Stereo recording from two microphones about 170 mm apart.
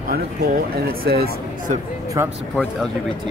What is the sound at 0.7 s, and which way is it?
Speech, 65° right (ahead or behind).